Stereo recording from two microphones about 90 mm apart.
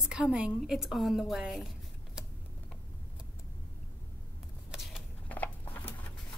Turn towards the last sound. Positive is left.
turn(degrees=20)  # may be behind; listen again after turning